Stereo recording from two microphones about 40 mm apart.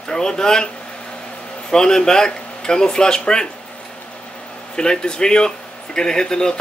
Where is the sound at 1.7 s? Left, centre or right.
Centre.